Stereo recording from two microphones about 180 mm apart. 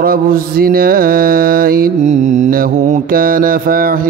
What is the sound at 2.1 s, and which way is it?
Mantra, 40° right (ahead or behind).